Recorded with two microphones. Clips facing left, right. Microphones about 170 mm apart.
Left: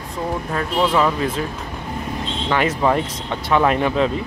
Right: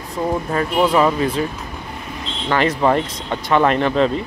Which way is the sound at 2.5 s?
5° left (ahead or behind).